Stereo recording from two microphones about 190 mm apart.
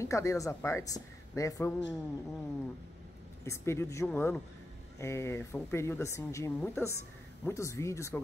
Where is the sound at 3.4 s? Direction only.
15° left (ahead or behind).